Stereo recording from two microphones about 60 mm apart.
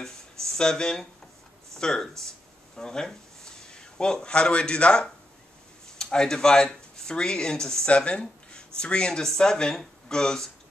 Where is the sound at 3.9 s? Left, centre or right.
Centre.